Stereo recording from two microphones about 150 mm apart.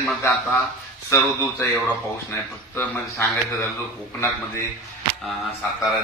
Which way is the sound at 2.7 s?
15° left (ahead or behind).